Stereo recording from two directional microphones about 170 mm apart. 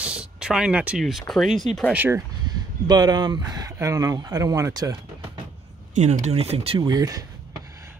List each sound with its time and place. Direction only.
0.0 s speech: 5° right (ahead or behind)
1.9 s speech: 10° right (ahead or behind)
2.4 s speech: 25° right (ahead or behind)
5.9 s speech: 45° right (ahead or behind); by 7.2 s 20° right (ahead or behind)